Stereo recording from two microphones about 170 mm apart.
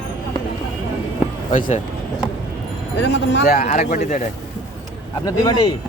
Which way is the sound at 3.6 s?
45° left (ahead or behind).